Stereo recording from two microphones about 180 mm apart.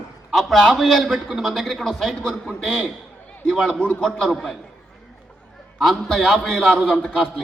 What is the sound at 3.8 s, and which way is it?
Speech, 10° left (ahead or behind).